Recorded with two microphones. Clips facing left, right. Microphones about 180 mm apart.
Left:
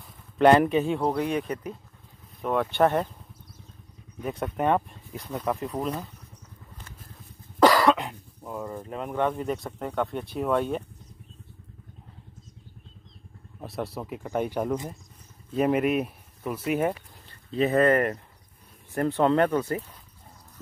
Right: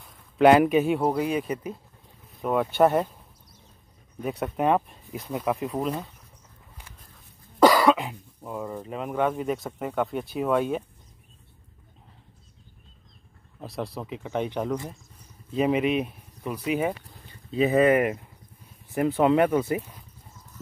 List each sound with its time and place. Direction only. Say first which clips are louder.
0.4 s speech: right 1 dB; 10° right (ahead or behind)
4.2 s speech: right 1 dB; 5° right (ahead or behind)
7.6 s cough: right 1 dB; centre (ahead or behind)
8.8 s speech: right 1 dB; 5° right (ahead or behind)
13.6 s speech: even; 5° left (ahead or behind)